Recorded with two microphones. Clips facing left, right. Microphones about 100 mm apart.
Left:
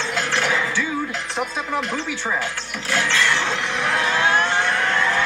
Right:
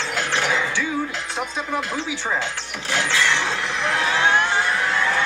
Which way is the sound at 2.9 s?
20° right (ahead or behind).